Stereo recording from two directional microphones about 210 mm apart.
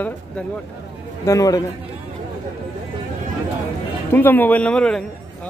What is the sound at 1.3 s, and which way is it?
Speech, 15° left (ahead or behind).